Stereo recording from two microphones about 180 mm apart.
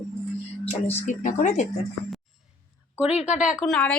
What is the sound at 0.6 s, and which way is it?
Speech, 35° left (ahead or behind).